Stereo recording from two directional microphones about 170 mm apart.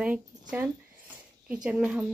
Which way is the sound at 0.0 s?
10° right (ahead or behind).